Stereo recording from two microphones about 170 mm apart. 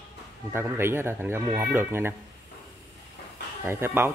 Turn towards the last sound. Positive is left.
turn(degrees=-15)  # may be behind; listen again after turning